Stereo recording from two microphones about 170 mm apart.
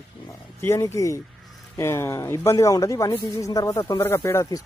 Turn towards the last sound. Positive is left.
turn(degrees=15)  # may be behind; listen again after turning